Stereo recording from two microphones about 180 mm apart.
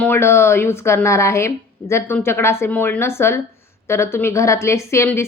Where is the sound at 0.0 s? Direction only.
10° left (ahead or behind).